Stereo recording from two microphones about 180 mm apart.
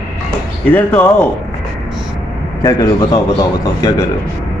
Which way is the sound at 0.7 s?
10° left (ahead or behind).